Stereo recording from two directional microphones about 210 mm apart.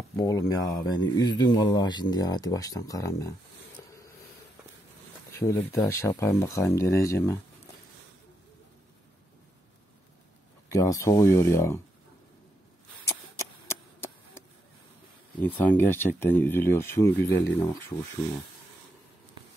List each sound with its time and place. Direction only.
0.1 s speech: 15° left (ahead or behind)
5.4 s speech: 10° left (ahead or behind)
10.7 s speech: 15° left (ahead or behind)
13.0 s a sound: 15° left (ahead or behind)
15.4 s speech: 10° left (ahead or behind)
17.3 s speech: 55° left (ahead or behind)